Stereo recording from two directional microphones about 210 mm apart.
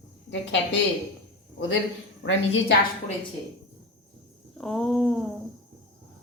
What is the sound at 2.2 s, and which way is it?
Speech, 60° left (ahead or behind).